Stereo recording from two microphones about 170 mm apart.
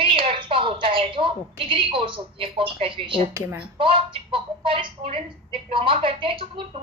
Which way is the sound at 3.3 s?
15° right (ahead or behind).